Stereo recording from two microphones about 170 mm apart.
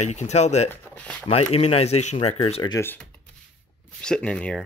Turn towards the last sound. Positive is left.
turn(degrees=5)  # may be behind; listen again after turning